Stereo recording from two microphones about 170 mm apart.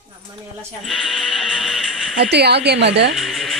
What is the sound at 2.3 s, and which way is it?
Speech, 75° right (ahead or behind).